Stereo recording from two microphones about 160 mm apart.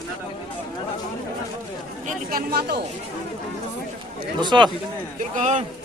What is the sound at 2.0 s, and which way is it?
Speech, 75° right (ahead or behind).